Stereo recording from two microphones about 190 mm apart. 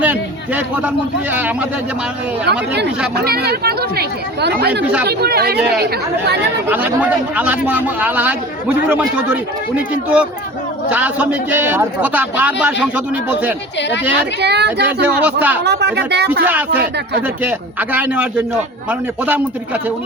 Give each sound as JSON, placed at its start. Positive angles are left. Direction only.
{"t": 0.0, "sound": "a sound", "side_deg": -10}
{"t": 1.3, "sound": "speech", "side_deg": -10}
{"t": 2.5, "sound": "speech", "side_deg": -60}
{"t": 4.8, "sound": "speech", "side_deg": -5}
{"t": 5.0, "sound": "speech", "side_deg": -55}
{"t": 6.7, "sound": "speech", "side_deg": -10}
{"t": 14.2, "sound": "speech", "side_deg": -60}
{"t": 15.2, "sound": "speech", "side_deg": -10}
{"t": 15.6, "sound": "speech", "side_deg": -60}
{"t": 17.2, "sound": "speech", "side_deg": -10}